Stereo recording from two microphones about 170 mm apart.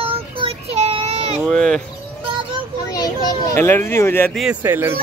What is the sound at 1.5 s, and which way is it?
Speech, 5° left (ahead or behind).